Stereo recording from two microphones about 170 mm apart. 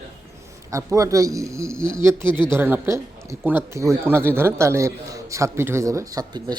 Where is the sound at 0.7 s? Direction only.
20° right (ahead or behind).